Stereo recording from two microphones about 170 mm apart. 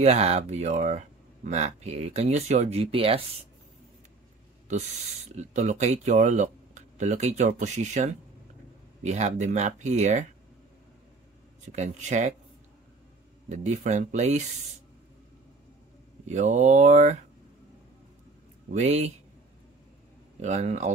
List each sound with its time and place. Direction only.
0.0 s speech: 40° right (ahead or behind)
5.3 s speech: 45° right (ahead or behind)
11.6 s speech: 40° right (ahead or behind)
13.5 s speech: 45° right (ahead or behind)
16.3 s speech: 45° right (ahead or behind)
18.7 s speech: 40° right (ahead or behind)
20.3 s speech: 40° right (ahead or behind)